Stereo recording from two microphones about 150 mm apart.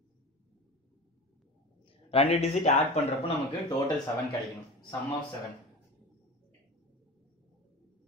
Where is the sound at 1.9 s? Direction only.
40° left (ahead or behind).